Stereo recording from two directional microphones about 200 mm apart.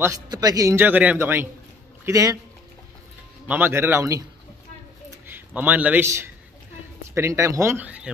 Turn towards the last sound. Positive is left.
turn(degrees=-10)  # may be behind; listen again after turning